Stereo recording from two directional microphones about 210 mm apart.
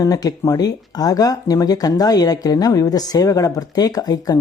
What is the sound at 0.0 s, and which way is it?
Speech, 15° left (ahead or behind).